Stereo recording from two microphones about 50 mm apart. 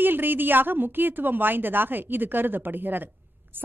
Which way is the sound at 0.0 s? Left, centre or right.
Right.